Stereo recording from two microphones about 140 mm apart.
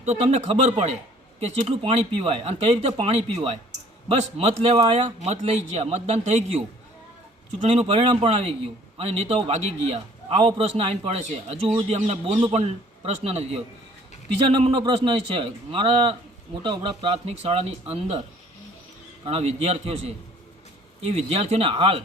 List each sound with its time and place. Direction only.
0.0 s speech: 50° right (ahead or behind)
1.4 s speech: 45° right (ahead or behind)
7.7 s speech: 45° right (ahead or behind)
14.4 s a man's voice: 35° right (ahead or behind)
19.2 s speech: 45° right (ahead or behind)